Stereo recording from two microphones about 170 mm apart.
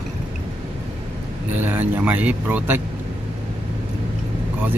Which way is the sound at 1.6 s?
10° right (ahead or behind).